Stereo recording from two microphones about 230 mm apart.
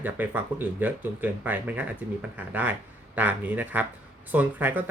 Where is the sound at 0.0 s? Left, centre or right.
Centre.